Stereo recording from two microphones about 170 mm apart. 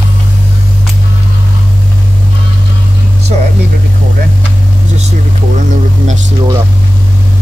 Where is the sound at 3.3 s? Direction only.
45° right (ahead or behind).